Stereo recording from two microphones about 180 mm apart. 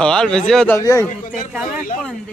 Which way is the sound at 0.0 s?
5° left (ahead or behind).